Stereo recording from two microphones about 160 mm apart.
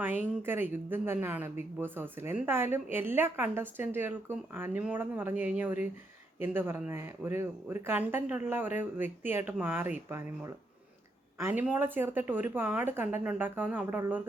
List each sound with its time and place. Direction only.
0.0 s speech: 10° right (ahead or behind)